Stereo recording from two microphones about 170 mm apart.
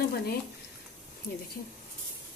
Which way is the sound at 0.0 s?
65° left (ahead or behind).